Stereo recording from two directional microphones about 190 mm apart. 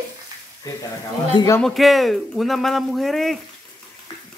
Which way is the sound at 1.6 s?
Centre (ahead or behind).